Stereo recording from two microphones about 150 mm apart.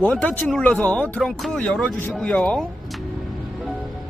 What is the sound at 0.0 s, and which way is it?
Speech, 10° left (ahead or behind).